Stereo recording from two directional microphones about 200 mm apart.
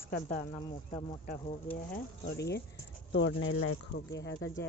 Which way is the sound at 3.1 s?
70° left (ahead or behind).